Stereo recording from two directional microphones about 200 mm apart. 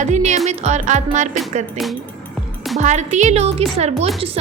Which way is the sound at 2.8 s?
35° right (ahead or behind).